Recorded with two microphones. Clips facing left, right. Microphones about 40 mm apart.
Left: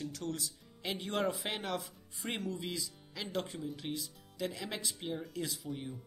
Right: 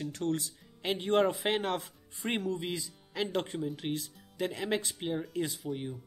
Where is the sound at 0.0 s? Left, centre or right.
Right.